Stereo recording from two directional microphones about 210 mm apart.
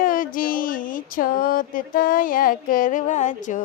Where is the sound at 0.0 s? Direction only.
40° left (ahead or behind).